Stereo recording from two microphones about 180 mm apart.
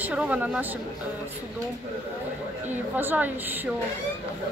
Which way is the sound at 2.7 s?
10° right (ahead or behind).